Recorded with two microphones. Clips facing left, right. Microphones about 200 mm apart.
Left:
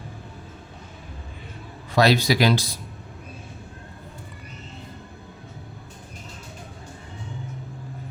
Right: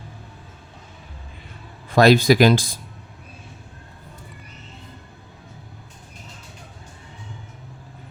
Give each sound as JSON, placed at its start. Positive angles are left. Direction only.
{"t": 1.9, "sound": "speech", "side_deg": -50}